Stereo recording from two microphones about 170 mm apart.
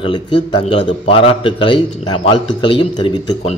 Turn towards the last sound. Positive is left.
turn(degrees=30)  # may be behind; listen again after turning